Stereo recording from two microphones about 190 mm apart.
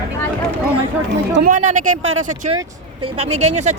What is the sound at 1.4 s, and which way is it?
Speech, 45° right (ahead or behind).